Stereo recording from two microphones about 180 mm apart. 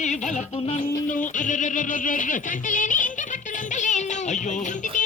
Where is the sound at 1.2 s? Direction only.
45° left (ahead or behind).